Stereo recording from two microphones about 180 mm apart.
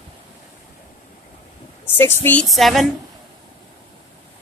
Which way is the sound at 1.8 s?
10° left (ahead or behind).